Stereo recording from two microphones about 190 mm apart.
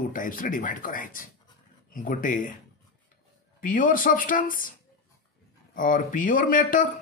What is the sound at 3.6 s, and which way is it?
Speech, 45° left (ahead or behind).